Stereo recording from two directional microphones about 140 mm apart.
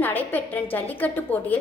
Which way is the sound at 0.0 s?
15° left (ahead or behind).